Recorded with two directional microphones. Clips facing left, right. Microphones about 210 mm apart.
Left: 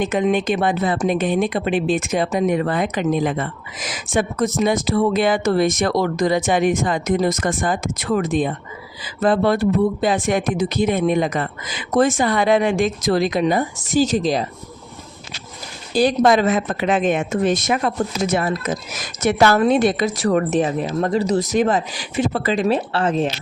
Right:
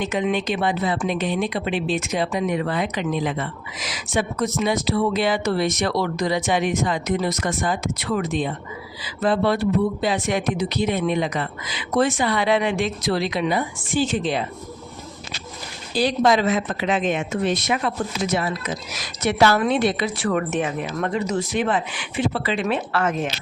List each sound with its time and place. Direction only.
0.0 s a woman's voice: 50° left (ahead or behind)
16.2 s a woman's voice: 50° left (ahead or behind); by 23.3 s 30° left (ahead or behind)